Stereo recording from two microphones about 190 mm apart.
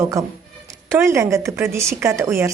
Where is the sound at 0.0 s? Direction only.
15° right (ahead or behind).